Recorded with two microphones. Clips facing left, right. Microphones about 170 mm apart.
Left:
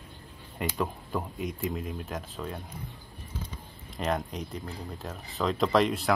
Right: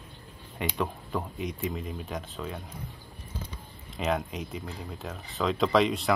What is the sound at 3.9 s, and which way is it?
Speech, centre (ahead or behind).